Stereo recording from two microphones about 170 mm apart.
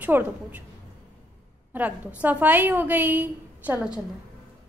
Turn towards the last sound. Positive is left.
turn(degrees=-10)  # may be behind; listen again after turning